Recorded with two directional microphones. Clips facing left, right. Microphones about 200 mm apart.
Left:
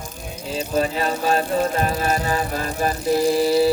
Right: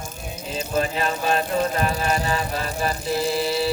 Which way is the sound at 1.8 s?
40° left (ahead or behind).